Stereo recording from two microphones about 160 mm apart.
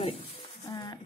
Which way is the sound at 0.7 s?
25° left (ahead or behind).